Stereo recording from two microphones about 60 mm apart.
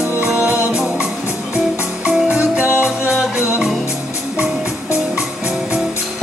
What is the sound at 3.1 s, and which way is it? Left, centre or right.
Music, centre.